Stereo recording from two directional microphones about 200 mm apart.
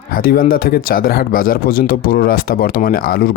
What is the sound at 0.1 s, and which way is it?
Speech, 45° left (ahead or behind).